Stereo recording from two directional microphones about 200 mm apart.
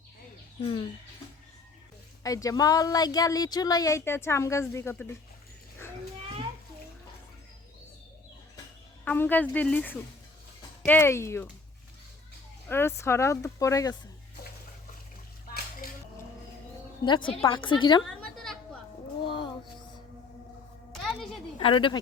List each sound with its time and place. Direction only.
2.2 s speech: 15° left (ahead or behind)
9.0 s speech: 10° left (ahead or behind)
12.6 s speech: 10° left (ahead or behind)
17.0 s a woman's voice: 25° left (ahead or behind)
19.2 s music: 25° left (ahead or behind)
20.9 s music: centre (ahead or behind)
21.6 s a woman's voice: 25° left (ahead or behind)